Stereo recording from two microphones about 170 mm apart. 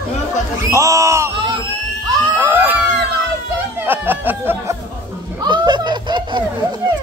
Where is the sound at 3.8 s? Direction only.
10° right (ahead or behind).